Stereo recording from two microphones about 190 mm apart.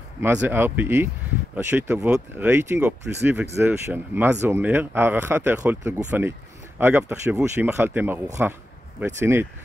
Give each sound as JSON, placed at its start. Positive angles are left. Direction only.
{"t": 0.2, "sound": "speech", "side_deg": -10}